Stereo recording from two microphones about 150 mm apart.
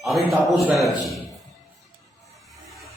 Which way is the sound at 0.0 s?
Centre (ahead or behind).